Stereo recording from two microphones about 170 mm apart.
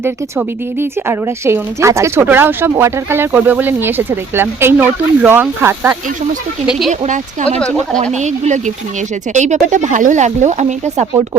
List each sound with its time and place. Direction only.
0.0 s speech: 15° right (ahead or behind)
6.7 s speech: centre (ahead or behind)
8.1 s speech: 45° right (ahead or behind)